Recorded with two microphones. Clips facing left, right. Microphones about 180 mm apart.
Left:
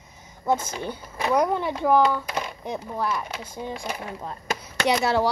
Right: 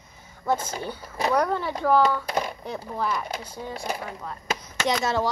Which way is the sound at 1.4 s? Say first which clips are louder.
Left 4 dB; 15° left (ahead or behind).